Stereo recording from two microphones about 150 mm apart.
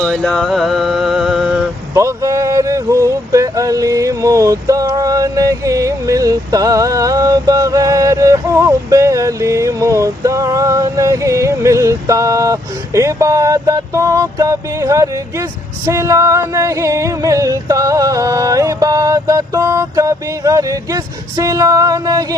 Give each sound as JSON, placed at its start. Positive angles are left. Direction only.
{"t": 0.0, "sound": "mantra", "side_deg": 5}
{"t": 1.9, "sound": "speech", "side_deg": -20}